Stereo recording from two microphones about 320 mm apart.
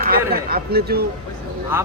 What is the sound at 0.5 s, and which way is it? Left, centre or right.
Speech, right.